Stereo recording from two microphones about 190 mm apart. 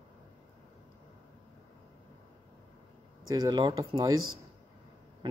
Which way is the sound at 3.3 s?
20° right (ahead or behind).